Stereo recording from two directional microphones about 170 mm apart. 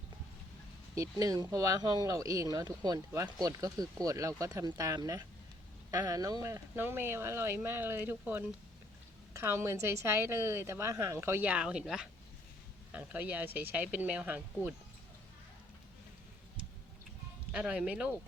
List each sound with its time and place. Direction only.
0.9 s a woman's voice: 20° right (ahead or behind)
17.5 s a woman's voice: 5° right (ahead or behind)